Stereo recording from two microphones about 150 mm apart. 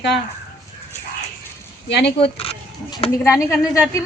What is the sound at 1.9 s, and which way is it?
Speech, 90° left.